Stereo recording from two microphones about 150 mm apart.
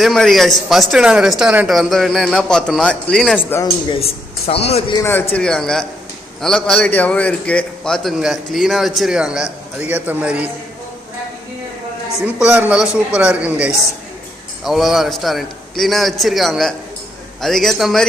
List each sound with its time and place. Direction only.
0.0 s a man's voice: centre (ahead or behind)
4.0 s a man's voice: 40° left (ahead or behind)
4.9 s a man's voice: 15° left (ahead or behind); by 10.5 s 10° right (ahead or behind)
12.3 s a man's voice: 10° right (ahead or behind)